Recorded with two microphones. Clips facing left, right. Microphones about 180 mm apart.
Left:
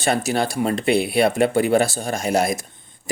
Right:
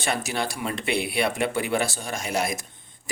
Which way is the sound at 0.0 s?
40° left (ahead or behind).